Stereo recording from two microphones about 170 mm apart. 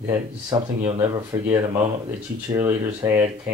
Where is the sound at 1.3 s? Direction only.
20° right (ahead or behind).